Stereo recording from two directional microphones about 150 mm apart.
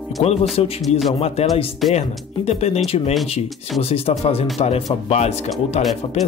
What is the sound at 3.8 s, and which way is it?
Speech, 40° left (ahead or behind).